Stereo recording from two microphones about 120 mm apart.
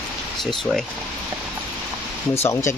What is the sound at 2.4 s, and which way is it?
Speech, 25° left (ahead or behind).